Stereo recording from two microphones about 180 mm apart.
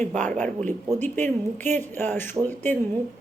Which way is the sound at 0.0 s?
40° right (ahead or behind).